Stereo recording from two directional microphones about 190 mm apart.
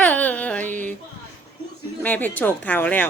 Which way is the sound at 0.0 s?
10° left (ahead or behind).